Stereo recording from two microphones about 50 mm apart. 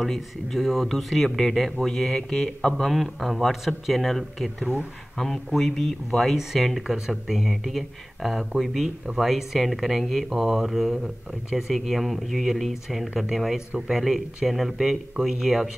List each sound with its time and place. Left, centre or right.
0.0 s speech: centre